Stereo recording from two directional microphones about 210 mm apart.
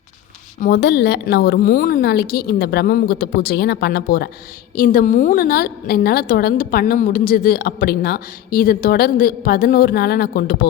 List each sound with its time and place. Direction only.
0.6 s a woman's voice: 50° left (ahead or behind)